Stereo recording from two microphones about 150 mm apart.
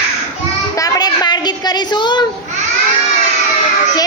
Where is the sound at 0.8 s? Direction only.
25° left (ahead or behind).